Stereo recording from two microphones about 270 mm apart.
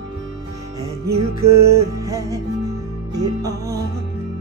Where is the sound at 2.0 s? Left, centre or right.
Centre.